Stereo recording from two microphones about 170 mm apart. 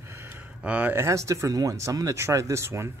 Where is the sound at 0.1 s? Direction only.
15° right (ahead or behind).